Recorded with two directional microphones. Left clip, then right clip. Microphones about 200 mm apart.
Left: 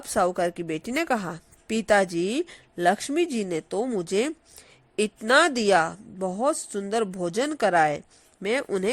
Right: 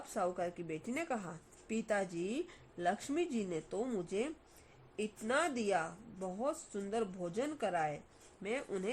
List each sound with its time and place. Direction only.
0.1 s a woman's voice: 35° left (ahead or behind)
4.9 s a woman's voice: 40° left (ahead or behind)